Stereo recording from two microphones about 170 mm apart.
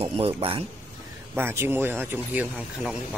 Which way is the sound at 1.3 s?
15° right (ahead or behind).